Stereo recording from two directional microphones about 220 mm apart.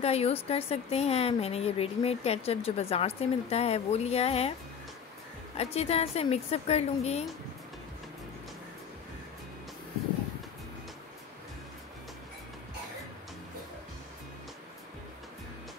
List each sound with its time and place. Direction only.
0.0 s a woman's voice: 30° left (ahead or behind)
5.6 s a woman's voice: 30° left (ahead or behind)